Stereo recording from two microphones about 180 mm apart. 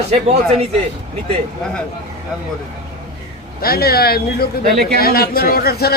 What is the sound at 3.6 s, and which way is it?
Speech, 60° left (ahead or behind).